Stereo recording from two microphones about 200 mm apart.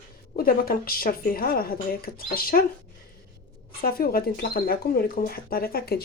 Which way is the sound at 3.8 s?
45° left (ahead or behind).